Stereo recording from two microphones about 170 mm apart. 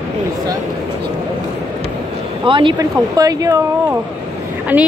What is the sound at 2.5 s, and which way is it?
Speech, 30° right (ahead or behind).